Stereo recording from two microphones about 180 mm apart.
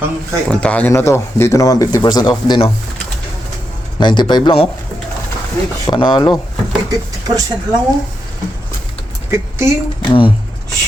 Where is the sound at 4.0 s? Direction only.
25° left (ahead or behind).